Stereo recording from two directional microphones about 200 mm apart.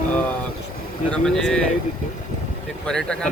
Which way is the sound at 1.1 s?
5° left (ahead or behind).